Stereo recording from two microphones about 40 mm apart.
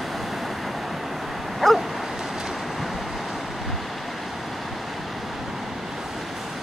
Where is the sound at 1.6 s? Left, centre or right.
Centre.